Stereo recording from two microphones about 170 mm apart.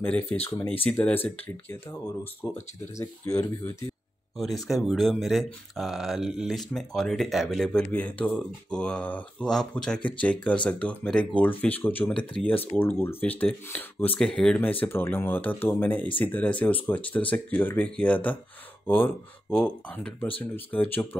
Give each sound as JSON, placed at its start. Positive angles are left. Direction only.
{"t": 0.0, "sound": "speech", "side_deg": 10}
{"t": 4.4, "sound": "speech", "side_deg": 0}